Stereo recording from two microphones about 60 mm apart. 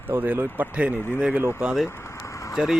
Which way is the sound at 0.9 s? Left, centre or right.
Left.